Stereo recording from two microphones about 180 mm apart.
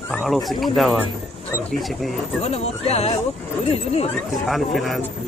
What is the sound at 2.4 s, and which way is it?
Speech, 35° left (ahead or behind).